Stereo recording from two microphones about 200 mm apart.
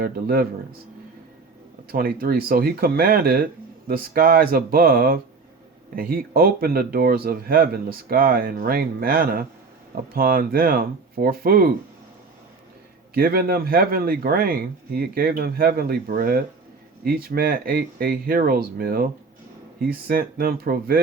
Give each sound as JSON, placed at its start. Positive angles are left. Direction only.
{"t": 0.0, "sound": "speech", "side_deg": -50}
{"t": 1.9, "sound": "speech", "side_deg": -45}
{"t": 13.1, "sound": "speech", "side_deg": -50}